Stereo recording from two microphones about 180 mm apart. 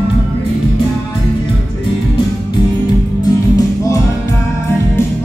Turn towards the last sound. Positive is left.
turn(degrees=20)  # may be behind; listen again after turning